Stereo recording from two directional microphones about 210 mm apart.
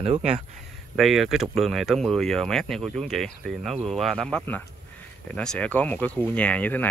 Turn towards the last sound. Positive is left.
turn(degrees=10)  # may be behind; listen again after turning